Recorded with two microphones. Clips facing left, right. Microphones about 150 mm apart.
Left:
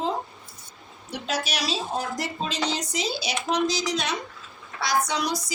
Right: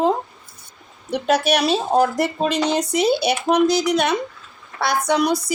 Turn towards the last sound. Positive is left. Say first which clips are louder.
# right 9 dB
turn(degrees=-60)  # may be behind; listen again after turning